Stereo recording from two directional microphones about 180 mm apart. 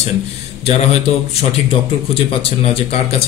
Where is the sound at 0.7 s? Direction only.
35° left (ahead or behind).